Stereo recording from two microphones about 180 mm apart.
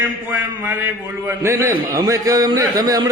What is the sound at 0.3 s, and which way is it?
A man's voice, 10° right (ahead or behind).